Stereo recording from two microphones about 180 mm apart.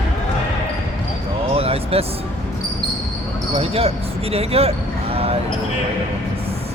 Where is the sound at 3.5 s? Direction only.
35° right (ahead or behind).